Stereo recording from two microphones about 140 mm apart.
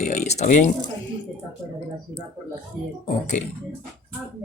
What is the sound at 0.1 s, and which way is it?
Speech, 55° left (ahead or behind).